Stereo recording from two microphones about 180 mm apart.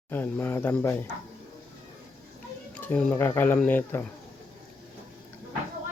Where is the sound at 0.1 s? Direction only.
10° left (ahead or behind).